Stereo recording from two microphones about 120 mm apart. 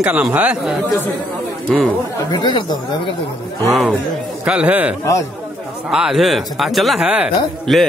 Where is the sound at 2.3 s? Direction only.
40° left (ahead or behind).